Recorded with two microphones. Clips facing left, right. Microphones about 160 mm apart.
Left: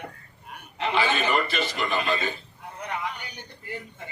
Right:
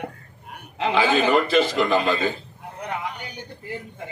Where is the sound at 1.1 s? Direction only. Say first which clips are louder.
Right 7 dB; 90° right.